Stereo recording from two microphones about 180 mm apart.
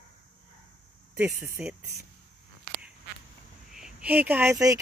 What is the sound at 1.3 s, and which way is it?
Speech, 15° right (ahead or behind).